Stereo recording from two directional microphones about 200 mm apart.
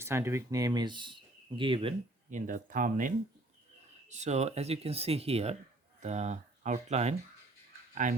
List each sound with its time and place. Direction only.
0.0 s speech: 15° right (ahead or behind)
2.3 s speech: 40° right (ahead or behind)